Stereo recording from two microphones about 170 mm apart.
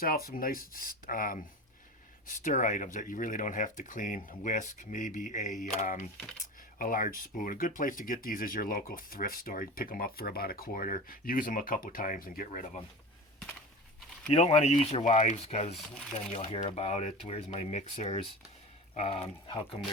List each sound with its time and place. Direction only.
0.0 s speech: 60° left (ahead or behind)
6.1 s speech: centre (ahead or behind)
6.7 s speech: 55° left (ahead or behind)
14.3 s speech: 40° left (ahead or behind)